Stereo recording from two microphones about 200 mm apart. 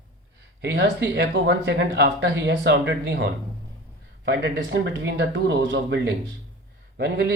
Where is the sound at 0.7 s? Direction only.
60° right (ahead or behind).